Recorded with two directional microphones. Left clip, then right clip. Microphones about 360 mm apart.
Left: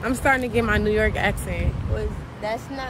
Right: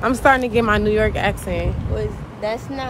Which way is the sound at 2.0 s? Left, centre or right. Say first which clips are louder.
Right 5 dB; right.